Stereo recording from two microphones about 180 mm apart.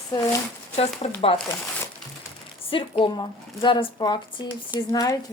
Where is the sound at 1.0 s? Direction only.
35° left (ahead or behind).